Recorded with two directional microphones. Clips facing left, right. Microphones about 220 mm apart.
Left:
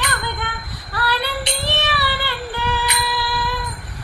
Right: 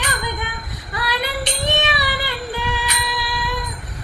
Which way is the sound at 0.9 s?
15° right (ahead or behind).